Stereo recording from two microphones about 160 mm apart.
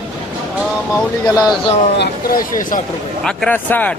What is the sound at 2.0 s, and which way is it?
Speech, 70° left (ahead or behind).